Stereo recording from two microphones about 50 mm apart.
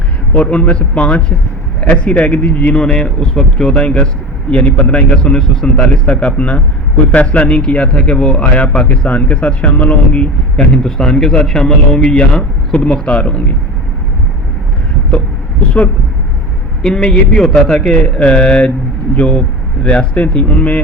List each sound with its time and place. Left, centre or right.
0.3 s speech: left
10.8 s a man's voice: centre
16.8 s a man's voice: centre
17.8 s speech: left